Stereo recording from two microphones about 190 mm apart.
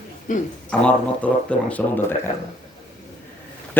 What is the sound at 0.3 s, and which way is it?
Speech, 40° left (ahead or behind).